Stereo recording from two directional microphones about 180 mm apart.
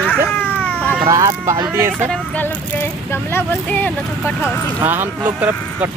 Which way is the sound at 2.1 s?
10° left (ahead or behind).